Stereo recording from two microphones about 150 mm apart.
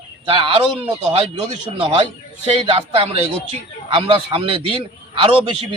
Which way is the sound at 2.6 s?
35° right (ahead or behind).